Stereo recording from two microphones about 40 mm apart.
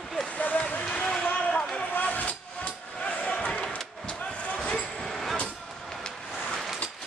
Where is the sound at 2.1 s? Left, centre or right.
Left.